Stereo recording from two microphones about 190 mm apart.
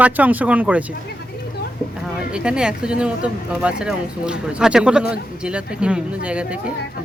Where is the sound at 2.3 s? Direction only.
5° right (ahead or behind).